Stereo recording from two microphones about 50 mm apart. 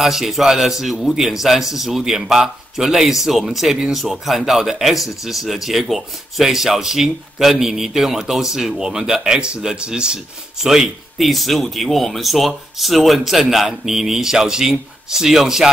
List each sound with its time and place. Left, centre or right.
0.0 s speech: centre